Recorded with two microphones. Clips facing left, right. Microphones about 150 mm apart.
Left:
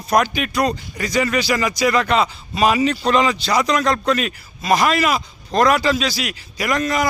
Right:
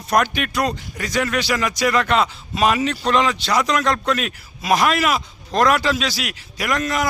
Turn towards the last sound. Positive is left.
turn(degrees=0)  # may be behind; listen again after turning